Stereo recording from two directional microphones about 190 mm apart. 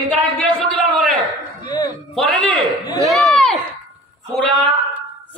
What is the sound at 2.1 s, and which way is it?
Speech, centre (ahead or behind).